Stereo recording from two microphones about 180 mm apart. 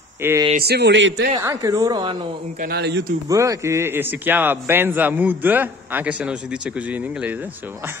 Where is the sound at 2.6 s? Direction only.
65° right (ahead or behind).